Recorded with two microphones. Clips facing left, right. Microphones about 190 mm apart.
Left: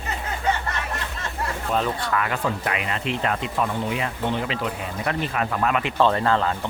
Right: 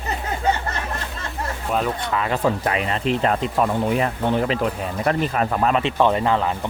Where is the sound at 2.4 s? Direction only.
35° right (ahead or behind).